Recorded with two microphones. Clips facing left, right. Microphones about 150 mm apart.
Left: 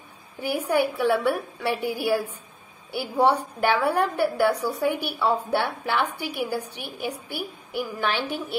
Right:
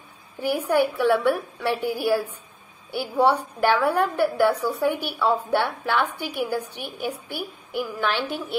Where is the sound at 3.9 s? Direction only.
15° left (ahead or behind).